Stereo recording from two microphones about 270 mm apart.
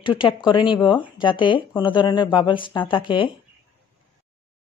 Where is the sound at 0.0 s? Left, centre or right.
Centre.